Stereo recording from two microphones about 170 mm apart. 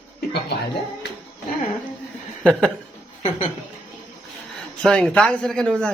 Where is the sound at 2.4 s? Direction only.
Centre (ahead or behind).